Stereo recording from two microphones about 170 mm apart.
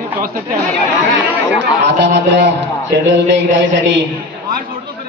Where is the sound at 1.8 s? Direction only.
90° right.